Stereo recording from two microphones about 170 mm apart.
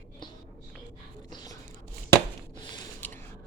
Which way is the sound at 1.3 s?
20° left (ahead or behind).